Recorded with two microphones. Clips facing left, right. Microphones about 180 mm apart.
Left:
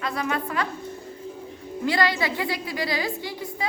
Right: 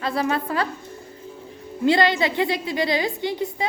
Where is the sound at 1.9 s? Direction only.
25° right (ahead or behind).